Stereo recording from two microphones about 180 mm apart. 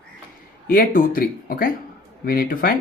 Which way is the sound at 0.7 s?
50° left (ahead or behind).